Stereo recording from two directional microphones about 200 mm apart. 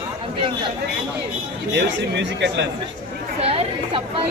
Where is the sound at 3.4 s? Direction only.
30° right (ahead or behind).